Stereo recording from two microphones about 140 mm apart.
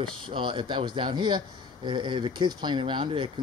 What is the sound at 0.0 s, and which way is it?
Speech, 35° right (ahead or behind).